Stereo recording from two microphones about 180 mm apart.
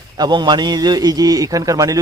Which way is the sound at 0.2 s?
25° right (ahead or behind).